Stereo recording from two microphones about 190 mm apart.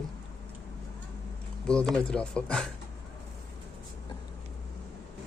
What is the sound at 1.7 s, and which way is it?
Speech, 5° left (ahead or behind).